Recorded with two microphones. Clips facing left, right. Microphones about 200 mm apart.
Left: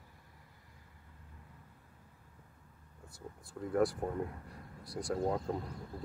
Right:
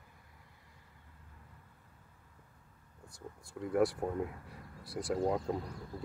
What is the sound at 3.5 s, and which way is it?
Speech, centre (ahead or behind).